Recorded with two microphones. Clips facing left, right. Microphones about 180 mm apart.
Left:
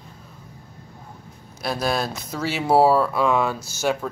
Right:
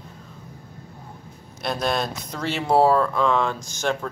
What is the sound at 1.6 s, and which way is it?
Speech, 5° left (ahead or behind).